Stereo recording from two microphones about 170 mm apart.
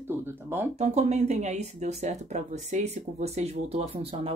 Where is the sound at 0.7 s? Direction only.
40° right (ahead or behind).